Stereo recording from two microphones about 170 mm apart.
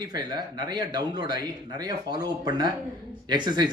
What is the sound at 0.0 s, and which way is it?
Speech, 25° right (ahead or behind).